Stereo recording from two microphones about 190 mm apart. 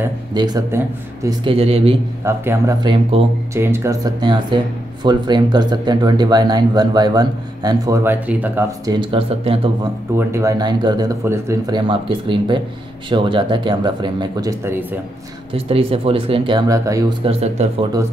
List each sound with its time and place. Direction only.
0.3 s speech: 20° right (ahead or behind)
1.4 s speech: 30° right (ahead or behind)
2.2 s speech: 15° right (ahead or behind)
2.8 s speech: 25° right (ahead or behind)
3.5 s speech: 15° right (ahead or behind)
8.8 s speech: 25° right (ahead or behind)
10.1 s speech: 15° right (ahead or behind)
15.5 s speech: 30° right (ahead or behind)
17.2 s speech: 30° right (ahead or behind)